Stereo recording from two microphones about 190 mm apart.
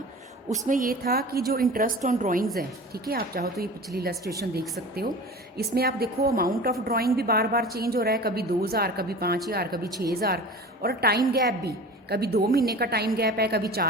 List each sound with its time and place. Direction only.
0.7 s a woman's voice: 50° right (ahead or behind)
4.2 s a woman's voice: 20° right (ahead or behind)
5.5 s a woman's voice: 55° right (ahead or behind)
9.8 s a woman's voice: 15° right (ahead or behind)
10.1 s a woman's voice: 55° right (ahead or behind)